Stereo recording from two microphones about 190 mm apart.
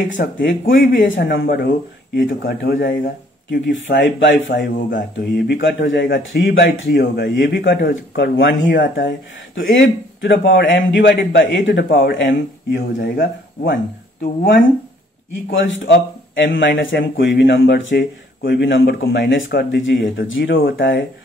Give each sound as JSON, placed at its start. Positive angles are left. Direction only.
{"t": 0.2, "sound": "a man's voice", "side_deg": 50}
{"t": 1.0, "sound": "speech", "side_deg": 80}
{"t": 1.4, "sound": "a man's voice", "side_deg": 55}
{"t": 3.6, "sound": "a man's voice", "side_deg": 75}
{"t": 4.6, "sound": "a man's voice", "side_deg": 50}
{"t": 9.6, "sound": "a man's voice", "side_deg": 80}
{"t": 11.9, "sound": "speech", "side_deg": 50}
{"t": 15.5, "sound": "a man's voice", "side_deg": 75}